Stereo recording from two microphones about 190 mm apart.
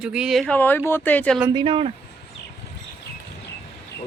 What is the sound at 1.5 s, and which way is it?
Speech, 25° right (ahead or behind).